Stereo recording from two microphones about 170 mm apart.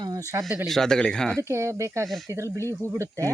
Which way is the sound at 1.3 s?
15° right (ahead or behind).